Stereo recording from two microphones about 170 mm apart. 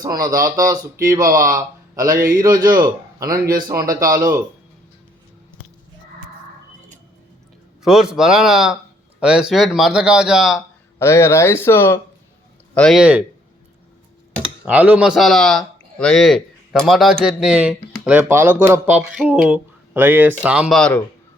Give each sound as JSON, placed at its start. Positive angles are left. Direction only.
{"t": 0.0, "sound": "speech", "side_deg": -20}
{"t": 7.8, "sound": "speech", "side_deg": 0}
{"t": 11.0, "sound": "speech", "side_deg": 15}
{"t": 12.7, "sound": "speech", "side_deg": 5}
{"t": 14.6, "sound": "speech", "side_deg": -10}